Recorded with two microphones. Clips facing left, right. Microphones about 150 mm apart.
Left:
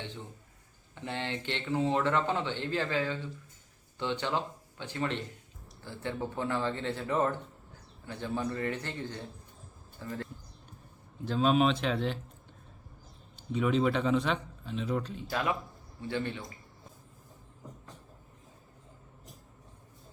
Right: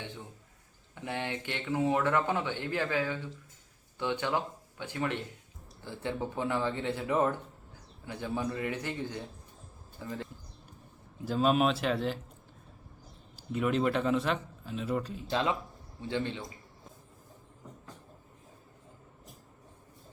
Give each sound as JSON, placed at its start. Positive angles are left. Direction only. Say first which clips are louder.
{"t": 0.9, "sound": "speech", "louder": "even", "side_deg": -10}
{"t": 11.3, "sound": "speech", "louder": "even", "side_deg": -5}
{"t": 13.3, "sound": "speech", "louder": "left 1 dB", "side_deg": -5}
{"t": 15.3, "sound": "a man's voice", "louder": "right 2 dB", "side_deg": -25}